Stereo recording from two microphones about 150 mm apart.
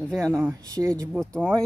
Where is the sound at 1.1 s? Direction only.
5° left (ahead or behind).